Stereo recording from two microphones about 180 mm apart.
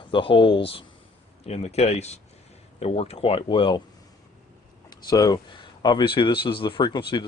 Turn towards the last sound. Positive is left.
turn(degrees=25)  # may be behind; listen again after turning